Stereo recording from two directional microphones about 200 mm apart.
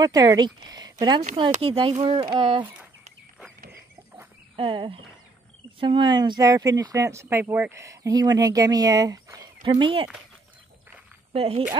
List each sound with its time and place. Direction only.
0.0 s speech: 20° right (ahead or behind)
4.6 s speech: 25° right (ahead or behind)
11.3 s speech: 30° right (ahead or behind)